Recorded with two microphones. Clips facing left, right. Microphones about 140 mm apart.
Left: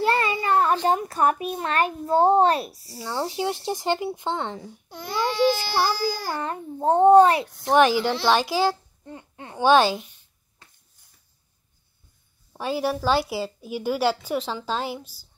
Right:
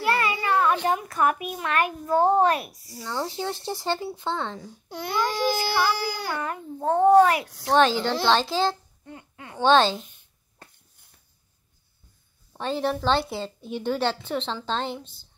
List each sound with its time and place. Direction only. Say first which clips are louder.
0.0 s a sound: left 2 dB; 35° left (ahead or behind)
0.8 s a child's voice: left 2 dB; 30° left (ahead or behind)
4.8 s speech: right 8 dB; 80° right
5.1 s speech: left 3 dB; 55° right (ahead or behind)
6.3 s a child's voice: left 1 dB; 30° left (ahead or behind)
7.7 s a woman's voice: left 2 dB; 10° left (ahead or behind)
9.0 s speech: left 3 dB; 30° left (ahead or behind)
9.6 s a woman's voice: left 1 dB; 10° left (ahead or behind)
12.5 s a woman's voice: left 1 dB; 10° left (ahead or behind)